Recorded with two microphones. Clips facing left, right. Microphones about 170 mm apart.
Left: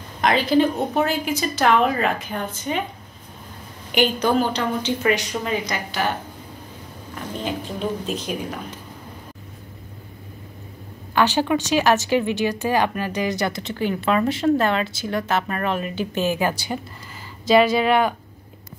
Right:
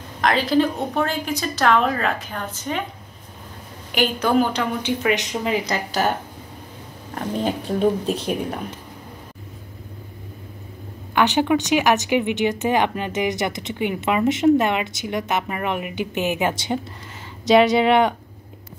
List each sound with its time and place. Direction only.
0.2 s a woman's voice: centre (ahead or behind)
3.9 s a woman's voice: 5° right (ahead or behind)
5.7 s a woman's voice: 40° right (ahead or behind)
7.2 s speech: 45° right (ahead or behind)
11.1 s speech: 15° right (ahead or behind)
17.7 s speech: 25° right (ahead or behind)